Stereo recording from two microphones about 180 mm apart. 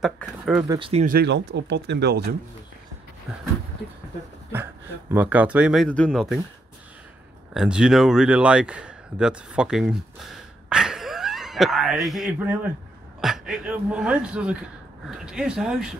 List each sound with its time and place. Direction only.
0.0 s speech: centre (ahead or behind)
0.7 s speech: 30° right (ahead or behind)
1.0 s speech: 65° right (ahead or behind)
3.3 s speech: 5° right (ahead or behind)
5.1 s speech: 10° right (ahead or behind)
7.5 s speech: 5° right (ahead or behind)